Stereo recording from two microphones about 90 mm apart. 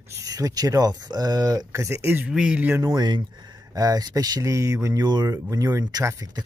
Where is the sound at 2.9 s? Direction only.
55° right (ahead or behind).